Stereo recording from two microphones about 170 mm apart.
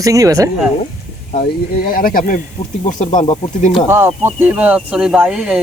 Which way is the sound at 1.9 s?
55° left (ahead or behind).